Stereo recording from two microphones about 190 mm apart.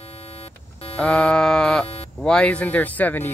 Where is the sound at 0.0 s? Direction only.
30° left (ahead or behind).